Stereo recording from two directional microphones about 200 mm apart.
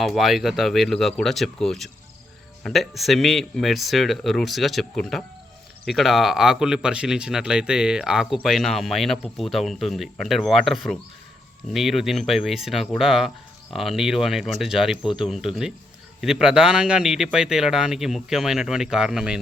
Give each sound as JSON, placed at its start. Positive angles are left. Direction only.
{"t": 0.0, "sound": "speech", "side_deg": 0}